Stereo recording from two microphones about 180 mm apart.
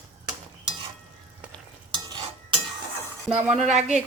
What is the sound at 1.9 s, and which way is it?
Stir, 25° right (ahead or behind).